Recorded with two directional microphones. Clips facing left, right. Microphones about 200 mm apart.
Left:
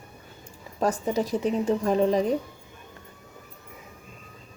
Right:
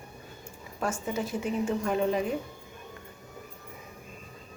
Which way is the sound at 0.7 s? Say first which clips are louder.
Left 6 dB; 35° left (ahead or behind).